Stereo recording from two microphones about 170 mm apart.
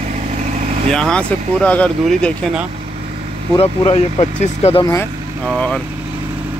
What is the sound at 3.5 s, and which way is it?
Speech, 35° left (ahead or behind).